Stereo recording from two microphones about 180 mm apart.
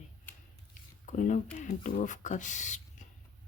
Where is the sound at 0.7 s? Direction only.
45° left (ahead or behind).